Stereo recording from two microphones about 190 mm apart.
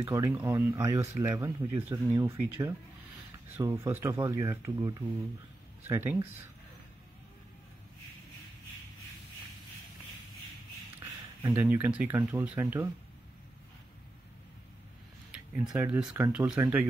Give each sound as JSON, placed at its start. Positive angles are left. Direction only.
{"t": 0.0, "sound": "speech", "side_deg": -15}
{"t": 11.4, "sound": "speech", "side_deg": -10}
{"t": 15.3, "sound": "speech", "side_deg": -5}